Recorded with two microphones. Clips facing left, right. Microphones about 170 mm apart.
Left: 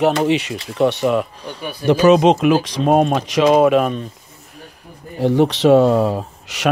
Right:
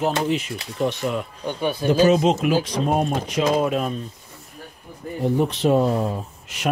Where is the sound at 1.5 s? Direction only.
25° right (ahead or behind).